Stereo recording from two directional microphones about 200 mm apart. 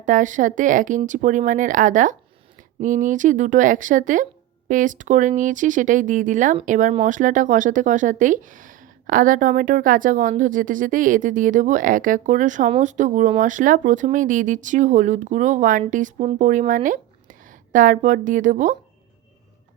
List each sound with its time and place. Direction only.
0.0 s speech: 40° right (ahead or behind)